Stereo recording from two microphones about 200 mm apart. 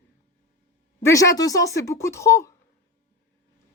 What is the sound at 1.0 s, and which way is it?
A woman's voice, 15° left (ahead or behind).